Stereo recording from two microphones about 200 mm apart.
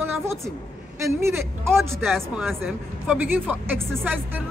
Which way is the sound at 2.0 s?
Centre (ahead or behind).